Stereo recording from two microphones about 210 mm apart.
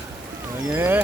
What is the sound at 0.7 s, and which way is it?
Speech, 10° right (ahead or behind).